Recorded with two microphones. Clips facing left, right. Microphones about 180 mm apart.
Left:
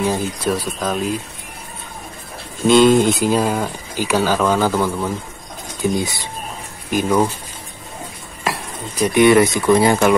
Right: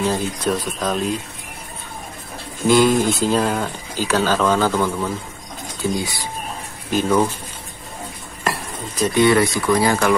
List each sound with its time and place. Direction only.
0.0 s speech: 10° left (ahead or behind)
2.6 s speech: 25° left (ahead or behind)
8.5 s dishes: centre (ahead or behind)
9.0 s speech: 20° left (ahead or behind)